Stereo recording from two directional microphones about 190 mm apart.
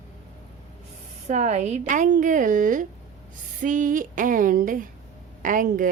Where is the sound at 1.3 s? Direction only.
40° right (ahead or behind).